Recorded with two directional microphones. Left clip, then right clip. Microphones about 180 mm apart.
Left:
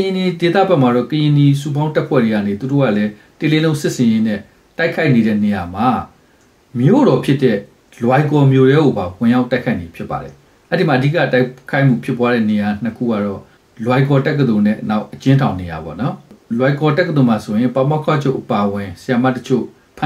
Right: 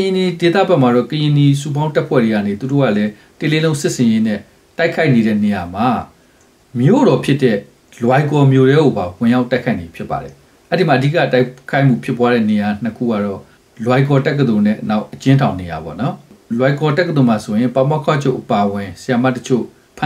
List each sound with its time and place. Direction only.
0.0 s speech: 20° right (ahead or behind)